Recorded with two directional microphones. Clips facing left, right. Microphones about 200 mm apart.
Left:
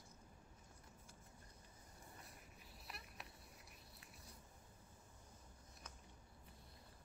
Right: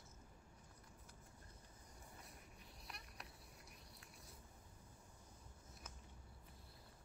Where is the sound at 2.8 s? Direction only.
Centre (ahead or behind).